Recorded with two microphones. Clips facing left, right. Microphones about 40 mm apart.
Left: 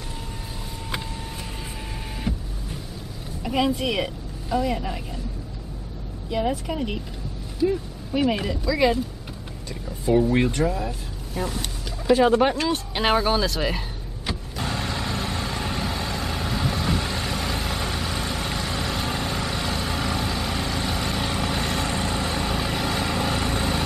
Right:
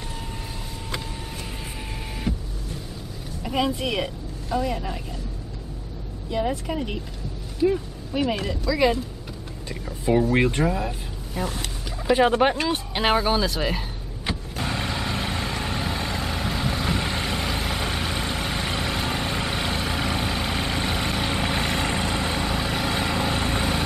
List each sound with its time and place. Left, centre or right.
2.3 s vehicle: centre
3.4 s a woman's voice: centre
6.3 s speech: centre
8.1 s speech: centre
9.8 s speech: centre
11.4 s speech: centre
14.2 s vehicle: centre
15.5 s vehicle: centre
17.8 s vehicle: right
22.5 s vehicle: centre